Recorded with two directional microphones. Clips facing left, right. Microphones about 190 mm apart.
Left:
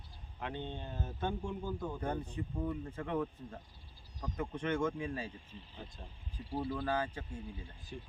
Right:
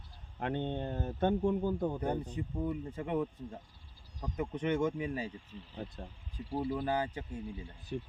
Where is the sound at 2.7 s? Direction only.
15° right (ahead or behind).